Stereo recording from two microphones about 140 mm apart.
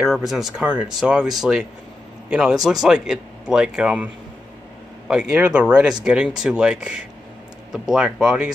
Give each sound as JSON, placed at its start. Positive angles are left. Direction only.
{"t": 0.0, "sound": "speech", "side_deg": 0}